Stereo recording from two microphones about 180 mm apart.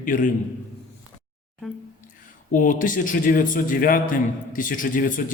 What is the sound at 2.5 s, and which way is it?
A man's voice, 50° left (ahead or behind).